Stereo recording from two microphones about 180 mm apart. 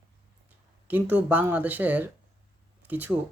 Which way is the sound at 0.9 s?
10° right (ahead or behind).